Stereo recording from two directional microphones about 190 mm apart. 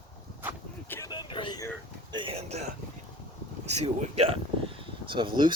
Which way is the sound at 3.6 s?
35° right (ahead or behind).